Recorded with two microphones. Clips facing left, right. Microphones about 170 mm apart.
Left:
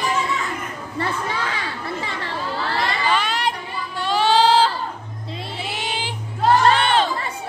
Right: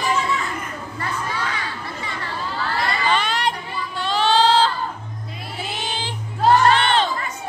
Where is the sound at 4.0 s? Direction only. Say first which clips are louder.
Left 1 dB; 10° left (ahead or behind).